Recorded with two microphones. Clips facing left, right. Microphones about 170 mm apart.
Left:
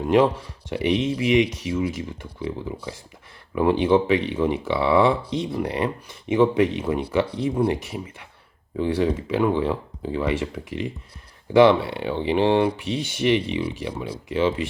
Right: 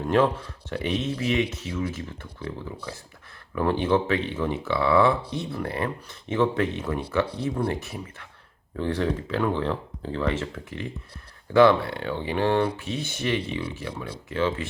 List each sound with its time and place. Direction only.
0.7 s speech: 15° left (ahead or behind)